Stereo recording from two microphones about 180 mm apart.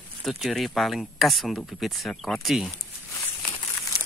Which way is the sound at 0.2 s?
Centre (ahead or behind).